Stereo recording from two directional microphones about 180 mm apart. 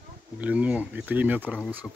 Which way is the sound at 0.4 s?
10° right (ahead or behind).